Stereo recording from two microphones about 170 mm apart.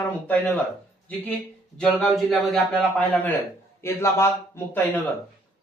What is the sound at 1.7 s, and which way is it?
A man's voice, centre (ahead or behind).